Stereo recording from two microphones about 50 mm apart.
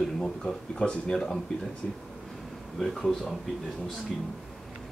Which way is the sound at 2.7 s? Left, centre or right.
Centre.